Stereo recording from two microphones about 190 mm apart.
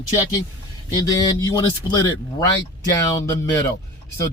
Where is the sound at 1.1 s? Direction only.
20° left (ahead or behind).